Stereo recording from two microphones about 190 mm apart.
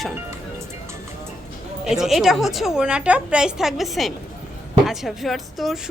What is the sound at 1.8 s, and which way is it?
A woman's voice, centre (ahead or behind).